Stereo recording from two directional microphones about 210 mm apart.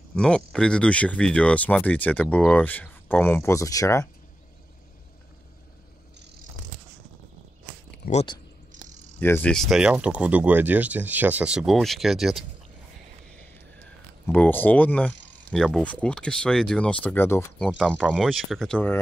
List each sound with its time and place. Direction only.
0.1 s speech: 5° left (ahead or behind)
8.0 s speech: 30° left (ahead or behind)
9.2 s speech: 10° left (ahead or behind)
14.2 s speech: 10° left (ahead or behind)
17.6 s speech: centre (ahead or behind)